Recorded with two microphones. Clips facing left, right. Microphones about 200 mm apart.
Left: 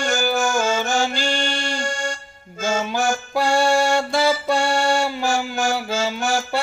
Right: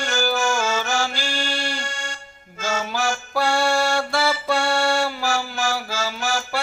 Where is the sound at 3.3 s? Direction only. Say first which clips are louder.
Left 3 dB; 20° left (ahead or behind).